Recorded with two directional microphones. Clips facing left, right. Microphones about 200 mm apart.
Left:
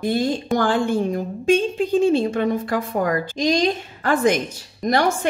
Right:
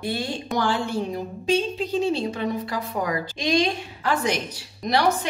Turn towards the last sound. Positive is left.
turn(degrees=50)  # may be behind; listen again after turning